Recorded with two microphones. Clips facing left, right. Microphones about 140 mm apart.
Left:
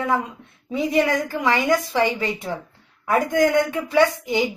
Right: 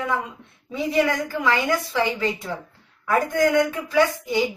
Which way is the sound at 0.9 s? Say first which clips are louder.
Even; 20° left (ahead or behind).